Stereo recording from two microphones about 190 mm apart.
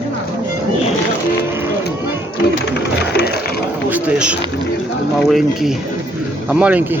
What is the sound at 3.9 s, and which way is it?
Speech, 10° right (ahead or behind).